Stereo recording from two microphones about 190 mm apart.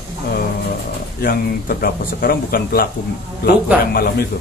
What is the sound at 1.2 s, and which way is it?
Speech, 50° left (ahead or behind).